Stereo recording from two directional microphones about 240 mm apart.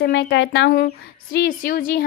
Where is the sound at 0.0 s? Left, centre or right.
Left.